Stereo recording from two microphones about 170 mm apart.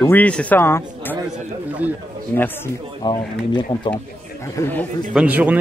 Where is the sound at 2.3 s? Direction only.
10° left (ahead or behind).